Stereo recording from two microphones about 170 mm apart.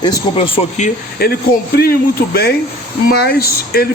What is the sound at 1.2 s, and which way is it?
Speech, 65° left (ahead or behind).